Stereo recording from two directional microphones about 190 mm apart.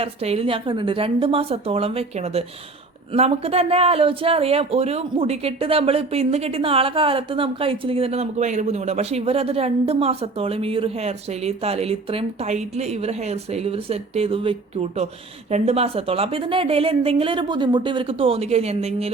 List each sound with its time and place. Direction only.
0.0 s a woman's voice: 30° right (ahead or behind)